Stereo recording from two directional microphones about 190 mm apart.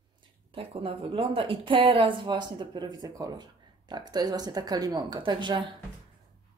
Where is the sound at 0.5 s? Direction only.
30° right (ahead or behind).